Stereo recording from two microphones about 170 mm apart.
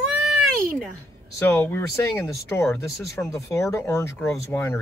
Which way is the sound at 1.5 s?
15° left (ahead or behind).